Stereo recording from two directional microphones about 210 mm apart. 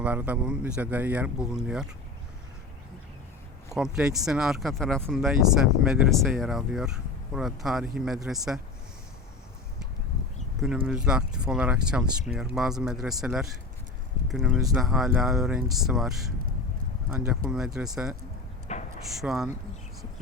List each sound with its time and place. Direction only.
0.0 s speech: 5° right (ahead or behind)
3.8 s speech: centre (ahead or behind)
10.6 s speech: centre (ahead or behind)
18.7 s a sound: 30° left (ahead or behind)
19.2 s speech: centre (ahead or behind)